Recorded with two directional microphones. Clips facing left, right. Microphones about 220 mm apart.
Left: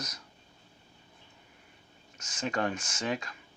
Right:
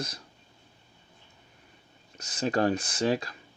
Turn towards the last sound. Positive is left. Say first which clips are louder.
# right 7 dB
turn(degrees=-35)  # may be behind; listen again after turning